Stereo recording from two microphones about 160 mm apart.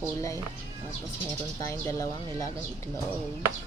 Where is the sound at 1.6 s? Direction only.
20° left (ahead or behind).